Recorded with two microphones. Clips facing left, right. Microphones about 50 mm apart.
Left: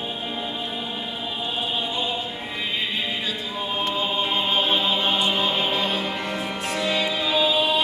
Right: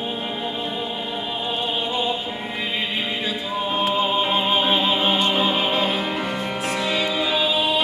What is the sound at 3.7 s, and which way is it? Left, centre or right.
Music, centre.